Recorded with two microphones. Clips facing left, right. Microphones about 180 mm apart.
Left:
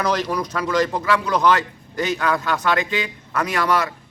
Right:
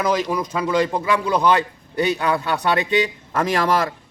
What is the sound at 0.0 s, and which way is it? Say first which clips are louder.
A man's voice: right 1 dB; 10° right (ahead or behind).